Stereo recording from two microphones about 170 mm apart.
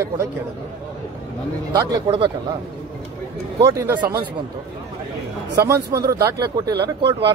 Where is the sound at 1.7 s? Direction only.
25° right (ahead or behind).